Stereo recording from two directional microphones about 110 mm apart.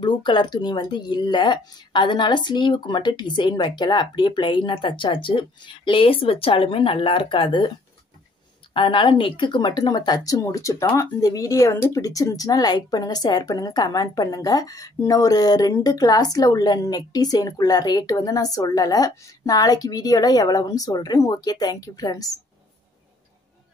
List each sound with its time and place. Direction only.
0.0 s speech: 45° left (ahead or behind)
8.7 s speech: 50° left (ahead or behind); by 22.4 s 30° left (ahead or behind)